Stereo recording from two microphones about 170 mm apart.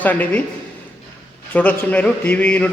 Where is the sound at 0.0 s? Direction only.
10° left (ahead or behind).